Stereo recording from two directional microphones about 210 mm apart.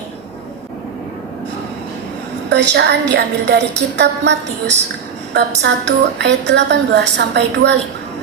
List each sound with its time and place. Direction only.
2.5 s a woman's voice: 55° right (ahead or behind)